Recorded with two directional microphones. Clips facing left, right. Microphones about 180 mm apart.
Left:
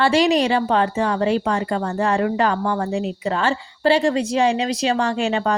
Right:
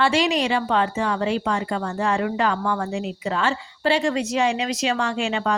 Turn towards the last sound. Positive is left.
turn(degrees=40)  # may be behind; listen again after turning